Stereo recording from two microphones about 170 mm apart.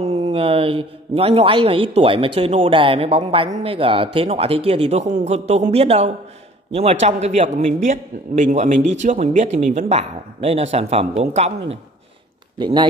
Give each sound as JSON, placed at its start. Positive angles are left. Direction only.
{"t": 0.2, "sound": "speech", "side_deg": -35}
{"t": 12.5, "sound": "speech", "side_deg": -25}